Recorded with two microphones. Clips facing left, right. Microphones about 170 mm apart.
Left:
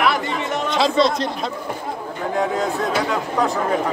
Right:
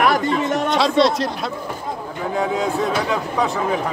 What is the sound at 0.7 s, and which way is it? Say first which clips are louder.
Speech: even; centre (ahead or behind).